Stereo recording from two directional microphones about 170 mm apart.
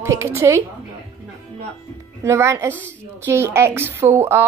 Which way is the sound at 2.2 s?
15° right (ahead or behind).